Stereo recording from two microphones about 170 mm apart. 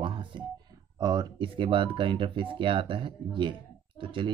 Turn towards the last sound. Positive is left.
turn(degrees=-30)  # may be behind; listen again after turning